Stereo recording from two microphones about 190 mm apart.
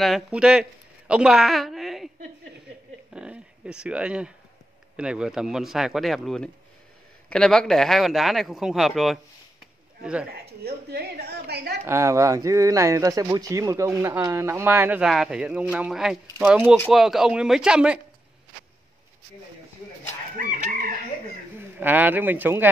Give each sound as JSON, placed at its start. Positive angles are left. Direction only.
{"t": 0.0, "sound": "a woman's voice", "side_deg": 0}
{"t": 3.1, "sound": "a sound", "side_deg": -5}
{"t": 4.9, "sound": "speech", "side_deg": -5}
{"t": 10.6, "sound": "a woman's voice", "side_deg": -55}
{"t": 11.8, "sound": "speech", "side_deg": -15}
{"t": 20.3, "sound": "chicken", "side_deg": -45}
{"t": 21.5, "sound": "a man's voice", "side_deg": -10}